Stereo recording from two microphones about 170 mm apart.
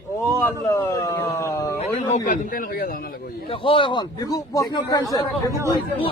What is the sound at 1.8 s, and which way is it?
Speech, 45° left (ahead or behind).